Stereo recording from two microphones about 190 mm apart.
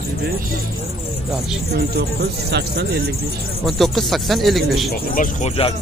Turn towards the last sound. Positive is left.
turn(degrees=35)  # may be behind; listen again after turning